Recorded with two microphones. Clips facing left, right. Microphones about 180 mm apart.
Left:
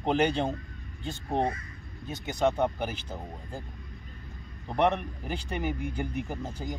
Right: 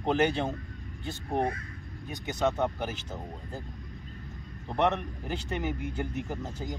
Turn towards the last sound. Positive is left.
turn(degrees=15)  # may be behind; listen again after turning